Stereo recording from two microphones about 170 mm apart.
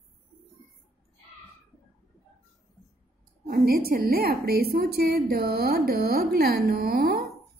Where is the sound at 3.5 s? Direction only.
60° right (ahead or behind).